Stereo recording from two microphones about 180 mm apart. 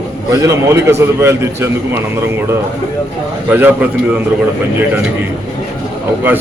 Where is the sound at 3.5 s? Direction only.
10° right (ahead or behind).